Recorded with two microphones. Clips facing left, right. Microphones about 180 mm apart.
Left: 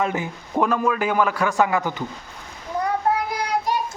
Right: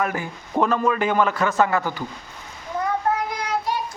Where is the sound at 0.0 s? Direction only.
20° left (ahead or behind).